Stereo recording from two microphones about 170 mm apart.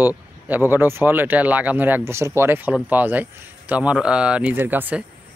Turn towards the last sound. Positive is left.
turn(degrees=-10)  # may be behind; listen again after turning